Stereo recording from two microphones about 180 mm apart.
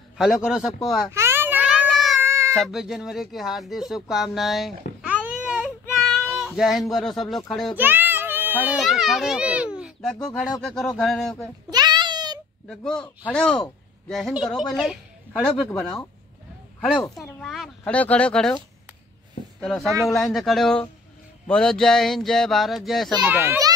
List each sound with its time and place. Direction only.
0.2 s speech: 5° right (ahead or behind)
1.1 s a sound: 15° right (ahead or behind)
2.2 s a sound: 15° right (ahead or behind)
2.5 s speech: centre (ahead or behind)
7.7 s children playing: 10° right (ahead or behind)
10.2 s speech: centre (ahead or behind)
11.7 s a sound: 25° right (ahead or behind)
12.6 s speech: 5° left (ahead or behind)
17.1 s speech: centre (ahead or behind)
19.6 s speech: centre (ahead or behind)
23.3 s a child's voice: 10° right (ahead or behind)